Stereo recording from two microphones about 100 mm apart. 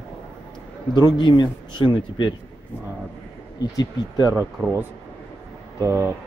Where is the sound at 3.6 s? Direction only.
40° left (ahead or behind).